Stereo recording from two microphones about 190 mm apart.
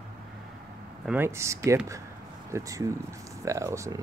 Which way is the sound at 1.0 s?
10° right (ahead or behind).